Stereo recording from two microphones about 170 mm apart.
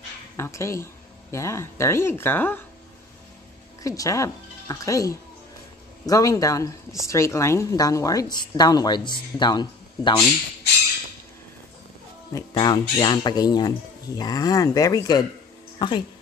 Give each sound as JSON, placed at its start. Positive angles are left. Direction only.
{"t": 0.4, "sound": "speech", "side_deg": 15}
{"t": 3.8, "sound": "speech", "side_deg": 20}
{"t": 12.3, "sound": "speech", "side_deg": 25}